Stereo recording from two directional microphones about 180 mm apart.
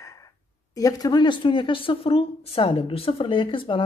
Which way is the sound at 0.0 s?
15° left (ahead or behind).